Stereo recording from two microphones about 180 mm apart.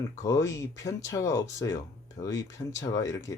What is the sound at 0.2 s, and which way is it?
Speech, 20° left (ahead or behind).